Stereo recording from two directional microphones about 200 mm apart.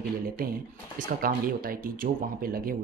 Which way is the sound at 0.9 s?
45° right (ahead or behind).